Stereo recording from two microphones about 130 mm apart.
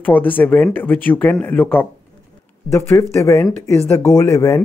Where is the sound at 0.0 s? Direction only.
15° left (ahead or behind).